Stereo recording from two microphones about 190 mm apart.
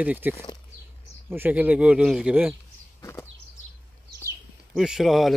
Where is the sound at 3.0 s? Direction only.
15° left (ahead or behind).